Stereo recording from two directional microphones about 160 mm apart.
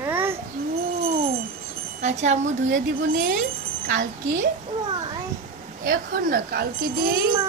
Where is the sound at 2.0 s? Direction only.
45° right (ahead or behind).